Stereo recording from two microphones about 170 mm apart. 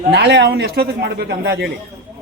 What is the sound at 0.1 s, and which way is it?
Speech, 70° right (ahead or behind).